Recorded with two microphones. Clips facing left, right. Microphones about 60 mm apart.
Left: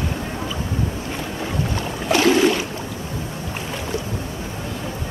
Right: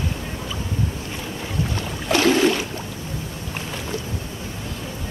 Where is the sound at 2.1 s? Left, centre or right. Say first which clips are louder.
Left 1 dB; left.